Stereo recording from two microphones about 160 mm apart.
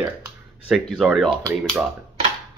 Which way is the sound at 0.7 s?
5° right (ahead or behind).